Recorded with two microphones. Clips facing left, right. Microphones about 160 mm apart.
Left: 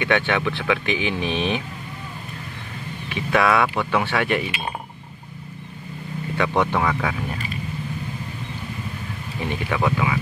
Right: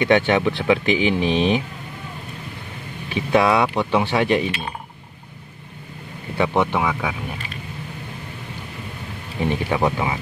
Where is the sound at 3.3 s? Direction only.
20° right (ahead or behind).